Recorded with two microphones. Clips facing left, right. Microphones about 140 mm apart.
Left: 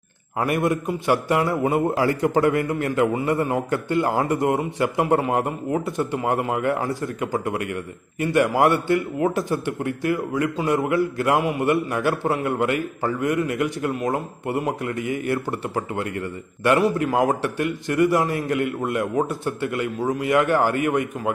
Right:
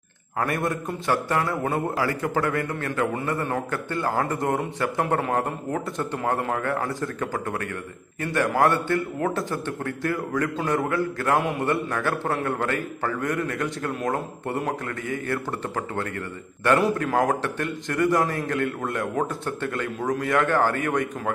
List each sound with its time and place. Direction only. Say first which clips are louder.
0.4 s a man's voice: left 4 dB; 20° left (ahead or behind)
11.3 s speech: even; centre (ahead or behind)
11.6 s a man's voice: left 4 dB; 15° left (ahead or behind)
14.0 s speech: left 2 dB; 5° left (ahead or behind)
14.9 s a man's voice: left 4 dB; 15° left (ahead or behind)
16.7 s a man's voice: left 1 dB; 5° left (ahead or behind)